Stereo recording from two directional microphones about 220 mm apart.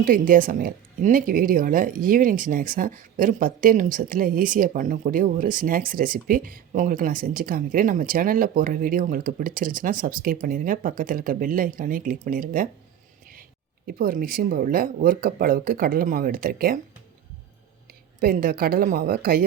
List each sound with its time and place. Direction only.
0.0 s a woman's voice: 40° right (ahead or behind)
13.8 s a woman's voice: 40° right (ahead or behind)
18.2 s a woman's voice: 40° right (ahead or behind)